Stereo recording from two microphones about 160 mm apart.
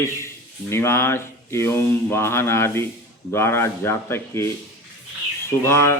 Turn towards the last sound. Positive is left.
turn(degrees=15)  # may be behind; listen again after turning